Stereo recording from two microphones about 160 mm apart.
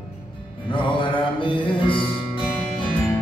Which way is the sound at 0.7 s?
30° left (ahead or behind).